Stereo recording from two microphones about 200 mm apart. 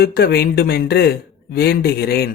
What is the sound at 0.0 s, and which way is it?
Speech, 50° left (ahead or behind).